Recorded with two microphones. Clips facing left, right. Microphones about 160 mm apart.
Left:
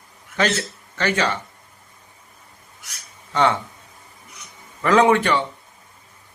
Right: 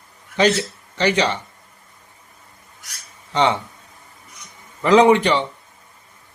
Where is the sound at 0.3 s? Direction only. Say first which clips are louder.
Right 4 dB; 15° right (ahead or behind).